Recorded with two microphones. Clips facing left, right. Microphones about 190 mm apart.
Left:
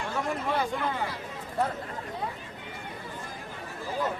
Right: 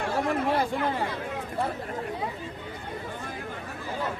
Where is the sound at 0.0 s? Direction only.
60° right (ahead or behind).